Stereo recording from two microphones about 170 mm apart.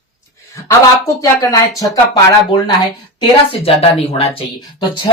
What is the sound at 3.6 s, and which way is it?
Speech, 35° left (ahead or behind).